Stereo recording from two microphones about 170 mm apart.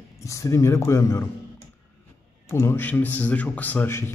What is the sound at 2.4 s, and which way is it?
A man's voice, 15° left (ahead or behind).